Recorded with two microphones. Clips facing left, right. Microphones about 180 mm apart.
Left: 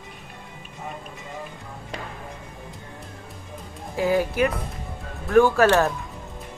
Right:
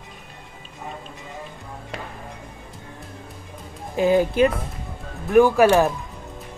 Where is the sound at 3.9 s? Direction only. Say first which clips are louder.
Right 4 dB; 20° right (ahead or behind).